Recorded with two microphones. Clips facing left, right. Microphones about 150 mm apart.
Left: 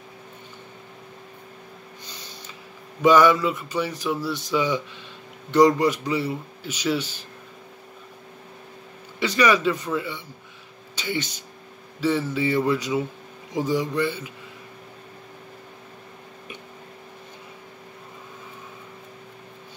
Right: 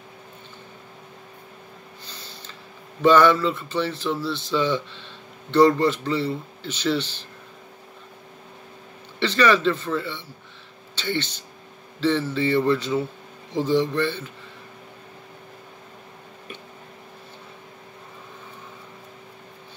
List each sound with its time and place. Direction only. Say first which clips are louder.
2.0 s a sound: even; 15° left (ahead or behind)
3.0 s a man's voice: even; 10° left (ahead or behind)
9.2 s a man's voice: right 1 dB; 10° left (ahead or behind)